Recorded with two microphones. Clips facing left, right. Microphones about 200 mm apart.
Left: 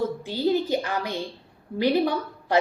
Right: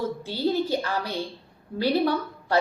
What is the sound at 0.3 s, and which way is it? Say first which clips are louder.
A woman's voice: left 1 dB; 15° left (ahead or behind).